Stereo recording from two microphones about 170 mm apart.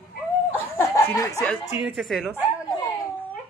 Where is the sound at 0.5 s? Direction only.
15° left (ahead or behind).